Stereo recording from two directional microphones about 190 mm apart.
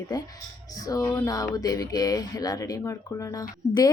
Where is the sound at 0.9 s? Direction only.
20° left (ahead or behind).